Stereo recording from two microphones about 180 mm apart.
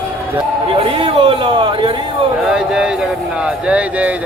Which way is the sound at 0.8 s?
30° right (ahead or behind).